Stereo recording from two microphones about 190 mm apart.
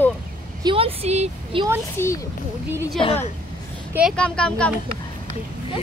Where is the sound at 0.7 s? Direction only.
30° right (ahead or behind).